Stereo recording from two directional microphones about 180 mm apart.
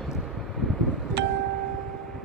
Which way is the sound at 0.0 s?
Centre (ahead or behind).